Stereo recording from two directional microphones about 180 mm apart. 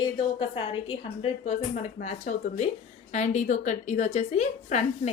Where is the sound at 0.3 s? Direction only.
30° left (ahead or behind).